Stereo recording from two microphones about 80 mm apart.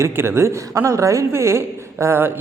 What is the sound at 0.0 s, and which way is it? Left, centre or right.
Speech, right.